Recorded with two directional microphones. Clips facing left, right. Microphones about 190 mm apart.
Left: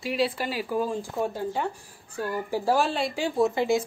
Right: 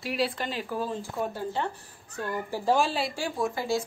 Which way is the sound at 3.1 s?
25° left (ahead or behind).